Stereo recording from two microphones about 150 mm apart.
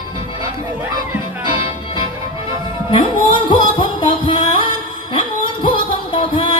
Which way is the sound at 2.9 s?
30° left (ahead or behind).